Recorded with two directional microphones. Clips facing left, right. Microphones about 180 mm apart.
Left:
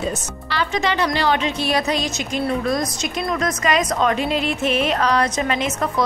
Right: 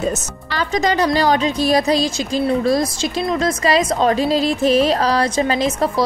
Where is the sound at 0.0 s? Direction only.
45° right (ahead or behind).